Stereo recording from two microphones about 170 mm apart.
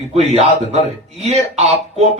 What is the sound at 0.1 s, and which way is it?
Speech, 35° right (ahead or behind).